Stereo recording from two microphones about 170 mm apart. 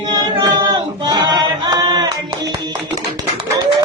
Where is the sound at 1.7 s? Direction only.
25° right (ahead or behind).